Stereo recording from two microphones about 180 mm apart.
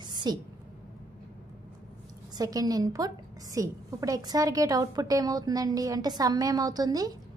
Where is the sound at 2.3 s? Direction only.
20° right (ahead or behind).